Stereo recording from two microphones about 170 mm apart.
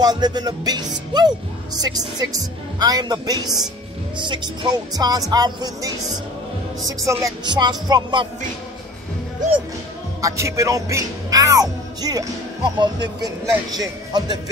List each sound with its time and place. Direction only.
0.0 s speech: 25° right (ahead or behind)
7.0 s speech: 20° right (ahead or behind)
10.2 s speech: 15° right (ahead or behind)